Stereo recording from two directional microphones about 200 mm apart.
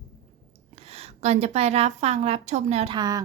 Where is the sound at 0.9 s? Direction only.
30° right (ahead or behind).